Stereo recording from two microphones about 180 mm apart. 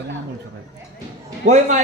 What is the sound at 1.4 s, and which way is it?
Speech, 40° right (ahead or behind).